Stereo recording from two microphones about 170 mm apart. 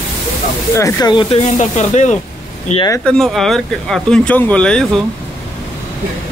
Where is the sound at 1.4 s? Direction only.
45° left (ahead or behind).